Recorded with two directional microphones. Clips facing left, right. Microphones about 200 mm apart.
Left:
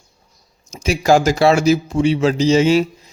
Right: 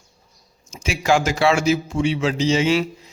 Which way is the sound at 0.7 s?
40° left (ahead or behind).